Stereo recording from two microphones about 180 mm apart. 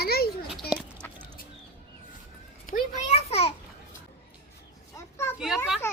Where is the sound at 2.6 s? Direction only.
35° left (ahead or behind).